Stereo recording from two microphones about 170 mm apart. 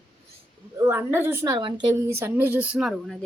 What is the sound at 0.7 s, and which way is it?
Speech, 15° right (ahead or behind).